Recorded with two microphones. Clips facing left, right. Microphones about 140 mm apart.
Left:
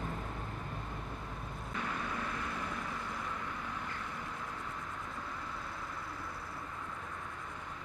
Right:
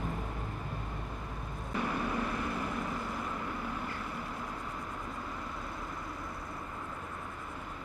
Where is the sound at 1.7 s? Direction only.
10° right (ahead or behind).